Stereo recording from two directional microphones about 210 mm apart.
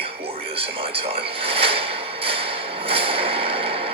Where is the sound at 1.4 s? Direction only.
25° right (ahead or behind).